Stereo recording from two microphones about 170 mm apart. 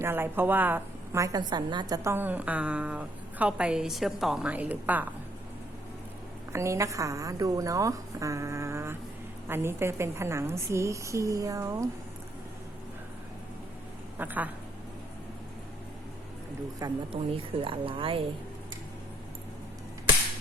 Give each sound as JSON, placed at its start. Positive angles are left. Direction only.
{"t": 0.0, "sound": "a woman's voice", "side_deg": -15}
{"t": 2.0, "sound": "a woman's voice", "side_deg": -10}
{"t": 6.5, "sound": "a woman's voice", "side_deg": -15}
{"t": 14.2, "sound": "a woman's voice", "side_deg": -10}
{"t": 16.8, "sound": "a woman's voice", "side_deg": -30}